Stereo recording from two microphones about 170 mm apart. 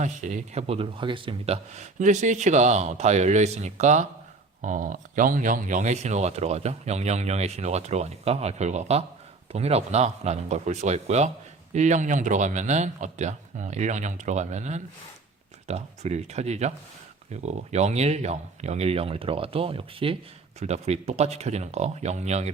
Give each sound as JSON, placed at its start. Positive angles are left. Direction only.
{"t": 0.0, "sound": "speech", "side_deg": -45}